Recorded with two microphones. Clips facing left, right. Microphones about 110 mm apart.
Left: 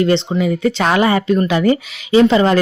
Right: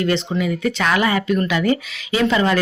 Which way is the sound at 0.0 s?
30° left (ahead or behind).